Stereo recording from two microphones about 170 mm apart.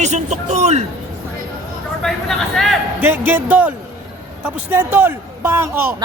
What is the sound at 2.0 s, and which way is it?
Speech, centre (ahead or behind).